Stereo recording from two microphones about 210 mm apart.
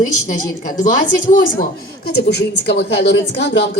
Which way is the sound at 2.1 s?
50° left (ahead or behind).